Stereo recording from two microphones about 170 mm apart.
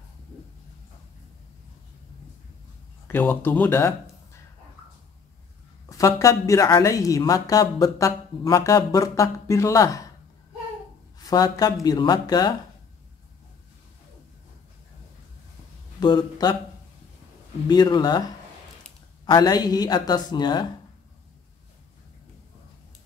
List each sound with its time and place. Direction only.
3.1 s speech: 10° left (ahead or behind)
5.9 s speech: 20° left (ahead or behind)
11.2 s speech: 20° left (ahead or behind)
16.0 s speech: 25° left (ahead or behind)
17.6 s speech: 25° left (ahead or behind)
19.2 s speech: 25° left (ahead or behind)